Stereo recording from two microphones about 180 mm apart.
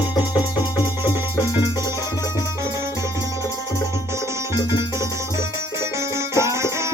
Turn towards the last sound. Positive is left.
turn(degrees=-15)  # may be behind; listen again after turning